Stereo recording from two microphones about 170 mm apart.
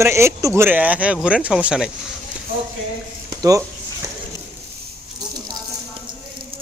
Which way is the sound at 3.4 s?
20° right (ahead or behind).